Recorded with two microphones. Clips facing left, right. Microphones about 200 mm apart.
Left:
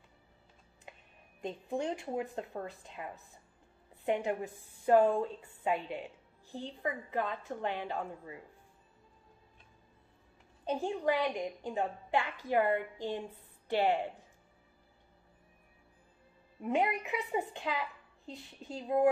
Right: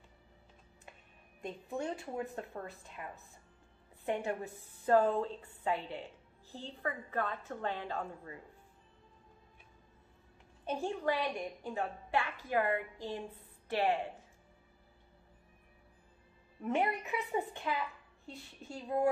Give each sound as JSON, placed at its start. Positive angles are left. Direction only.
{"t": 1.4, "sound": "a woman's voice", "side_deg": 20}
{"t": 10.7, "sound": "a woman's voice", "side_deg": 15}
{"t": 16.6, "sound": "a woman's voice", "side_deg": 15}